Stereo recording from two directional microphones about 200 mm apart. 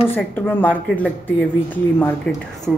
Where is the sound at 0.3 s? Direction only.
10° left (ahead or behind).